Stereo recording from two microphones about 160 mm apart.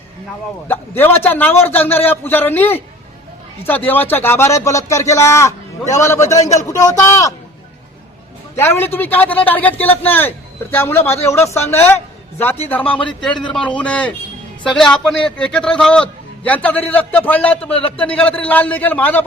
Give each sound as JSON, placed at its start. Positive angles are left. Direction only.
{"t": 0.7, "sound": "a man's voice", "side_deg": 10}
{"t": 8.5, "sound": "a man's voice", "side_deg": 15}